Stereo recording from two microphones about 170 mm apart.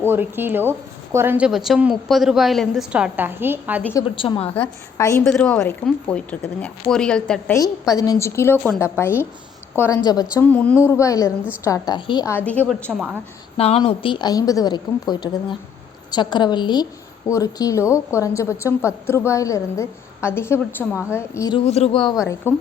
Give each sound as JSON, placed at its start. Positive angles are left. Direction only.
{"t": 0.0, "sound": "a woman's voice", "side_deg": -15}
{"t": 4.1, "sound": "a woman's voice", "side_deg": 30}
{"t": 4.9, "sound": "a woman's voice", "side_deg": 20}
{"t": 5.2, "sound": "a woman's voice", "side_deg": 5}
{"t": 7.5, "sound": "a woman's voice", "side_deg": 20}
{"t": 10.0, "sound": "a woman's voice", "side_deg": 25}
{"t": 10.3, "sound": "a woman's voice", "side_deg": 10}
{"t": 12.5, "sound": "a woman's voice", "side_deg": 5}
{"t": 13.6, "sound": "a woman's voice", "side_deg": 35}
{"t": 21.6, "sound": "a woman's voice", "side_deg": 40}